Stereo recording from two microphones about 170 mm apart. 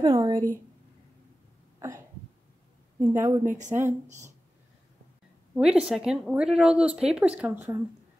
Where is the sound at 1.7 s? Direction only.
15° right (ahead or behind).